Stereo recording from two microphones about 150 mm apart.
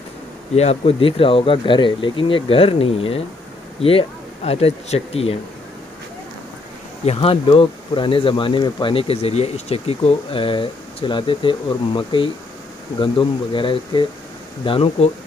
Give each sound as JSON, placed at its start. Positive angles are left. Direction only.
{"t": 0.6, "sound": "speech", "side_deg": 40}
{"t": 4.5, "sound": "speech", "side_deg": 45}
{"t": 7.1, "sound": "speech", "side_deg": 40}